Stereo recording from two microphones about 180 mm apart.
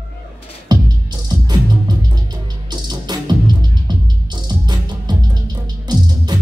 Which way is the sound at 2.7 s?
25° right (ahead or behind).